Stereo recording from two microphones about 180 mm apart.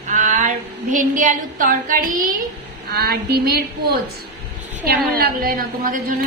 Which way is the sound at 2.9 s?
60° right (ahead or behind).